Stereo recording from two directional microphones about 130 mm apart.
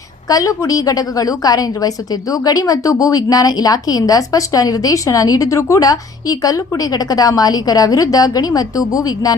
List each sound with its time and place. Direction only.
0.3 s a woman's voice: 25° left (ahead or behind)